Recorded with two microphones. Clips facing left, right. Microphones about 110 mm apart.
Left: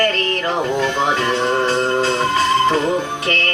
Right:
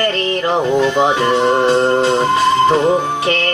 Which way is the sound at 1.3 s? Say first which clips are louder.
Right 5 dB; 15° right (ahead or behind).